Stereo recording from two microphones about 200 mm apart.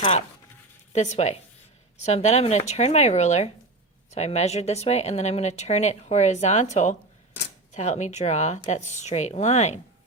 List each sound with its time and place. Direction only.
0.9 s speech: 35° left (ahead or behind)